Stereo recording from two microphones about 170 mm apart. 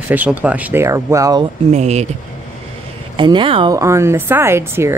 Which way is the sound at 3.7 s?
15° right (ahead or behind).